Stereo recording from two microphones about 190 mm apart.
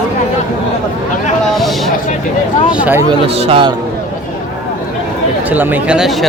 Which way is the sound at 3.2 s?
30° right (ahead or behind).